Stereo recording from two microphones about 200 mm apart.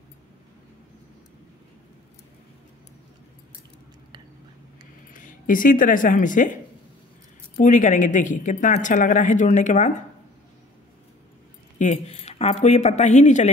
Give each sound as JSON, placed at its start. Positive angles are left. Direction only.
{"t": 5.1, "sound": "a woman's voice", "side_deg": 40}
{"t": 11.8, "sound": "a woman's voice", "side_deg": 35}